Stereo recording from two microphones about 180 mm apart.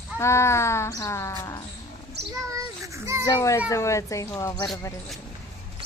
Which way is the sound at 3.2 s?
15° left (ahead or behind).